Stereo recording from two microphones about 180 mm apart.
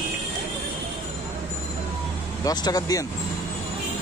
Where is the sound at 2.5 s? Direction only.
20° left (ahead or behind).